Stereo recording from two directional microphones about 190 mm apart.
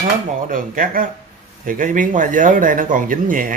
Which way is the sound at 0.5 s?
45° right (ahead or behind).